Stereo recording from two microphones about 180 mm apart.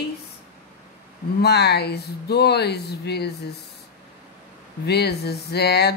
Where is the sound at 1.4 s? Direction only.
65° left (ahead or behind).